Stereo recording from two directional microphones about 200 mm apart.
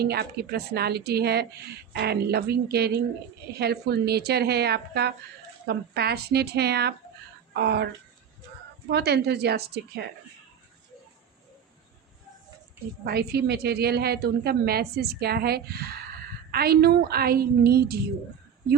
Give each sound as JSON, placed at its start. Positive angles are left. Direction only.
{"t": 0.0, "sound": "a woman's voice", "side_deg": -50}
{"t": 8.9, "sound": "a woman's voice", "side_deg": -55}
{"t": 13.1, "sound": "a woman's voice", "side_deg": -55}